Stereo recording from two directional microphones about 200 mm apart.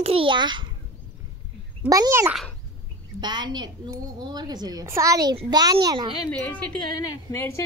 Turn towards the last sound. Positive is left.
turn(degrees=15)  # may be behind; listen again after turning